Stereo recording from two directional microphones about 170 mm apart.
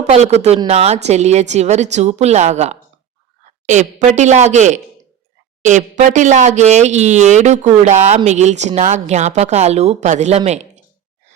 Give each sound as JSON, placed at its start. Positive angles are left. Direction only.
{"t": 0.1, "sound": "a woman's voice", "side_deg": -40}